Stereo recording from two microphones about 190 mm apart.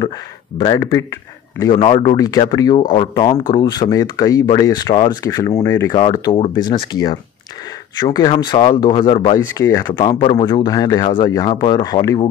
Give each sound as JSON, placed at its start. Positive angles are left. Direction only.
{"t": 0.6, "sound": "a man's voice", "side_deg": 20}
{"t": 1.7, "sound": "speech", "side_deg": 30}